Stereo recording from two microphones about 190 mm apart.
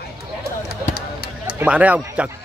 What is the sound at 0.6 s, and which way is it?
Basketball bounce, 50° left (ahead or behind).